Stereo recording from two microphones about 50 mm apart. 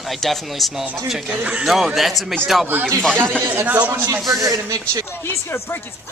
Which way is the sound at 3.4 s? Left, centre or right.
Right.